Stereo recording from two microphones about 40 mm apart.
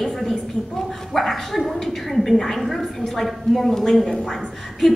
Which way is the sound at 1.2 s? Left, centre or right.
Centre.